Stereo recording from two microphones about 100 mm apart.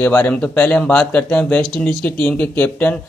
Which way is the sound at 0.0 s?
25° left (ahead or behind).